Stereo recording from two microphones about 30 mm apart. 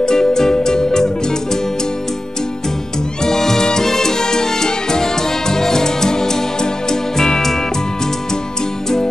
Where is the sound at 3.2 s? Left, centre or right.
Centre.